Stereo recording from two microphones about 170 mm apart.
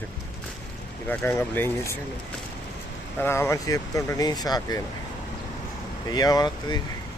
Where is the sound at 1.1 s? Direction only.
10° left (ahead or behind).